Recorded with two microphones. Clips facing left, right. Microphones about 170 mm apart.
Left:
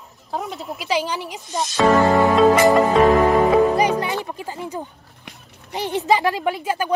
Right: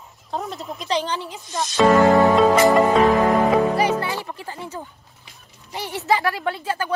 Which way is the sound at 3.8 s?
15° left (ahead or behind).